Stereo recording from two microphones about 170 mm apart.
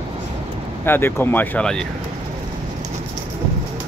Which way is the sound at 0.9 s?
15° left (ahead or behind).